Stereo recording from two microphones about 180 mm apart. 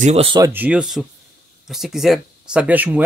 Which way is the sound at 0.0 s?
35° right (ahead or behind).